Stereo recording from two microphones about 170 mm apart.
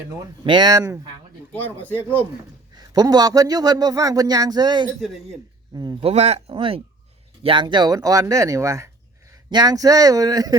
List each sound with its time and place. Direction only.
0.4 s a man's voice: 25° right (ahead or behind)
1.5 s speech: 10° left (ahead or behind)
2.7 s a man's voice: 20° right (ahead or behind)
4.9 s speech: centre (ahead or behind)
5.7 s a man's voice: 25° right (ahead or behind)